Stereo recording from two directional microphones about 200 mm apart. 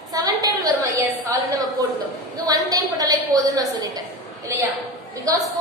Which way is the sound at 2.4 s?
20° right (ahead or behind).